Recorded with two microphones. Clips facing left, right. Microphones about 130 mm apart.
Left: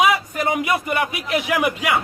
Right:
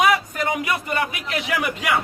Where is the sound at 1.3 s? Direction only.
15° left (ahead or behind).